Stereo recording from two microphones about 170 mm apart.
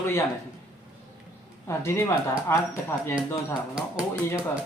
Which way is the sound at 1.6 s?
15° left (ahead or behind).